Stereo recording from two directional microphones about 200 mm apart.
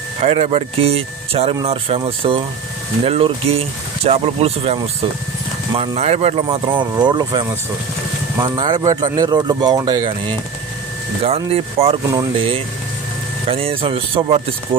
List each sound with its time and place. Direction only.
0.2 s speech: 30° right (ahead or behind)